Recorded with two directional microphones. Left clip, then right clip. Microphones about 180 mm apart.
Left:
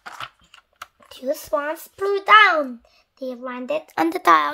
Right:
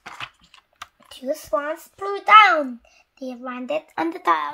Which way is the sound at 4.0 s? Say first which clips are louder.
Left 6 dB; 70° left (ahead or behind).